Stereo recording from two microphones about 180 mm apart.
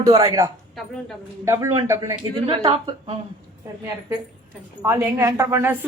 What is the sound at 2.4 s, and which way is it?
Speech, 30° right (ahead or behind).